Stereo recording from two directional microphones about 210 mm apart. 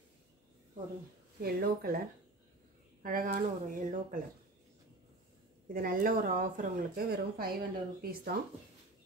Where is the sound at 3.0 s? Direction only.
40° right (ahead or behind).